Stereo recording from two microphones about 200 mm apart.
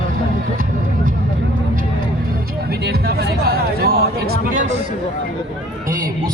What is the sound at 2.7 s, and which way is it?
Speech, 50° right (ahead or behind).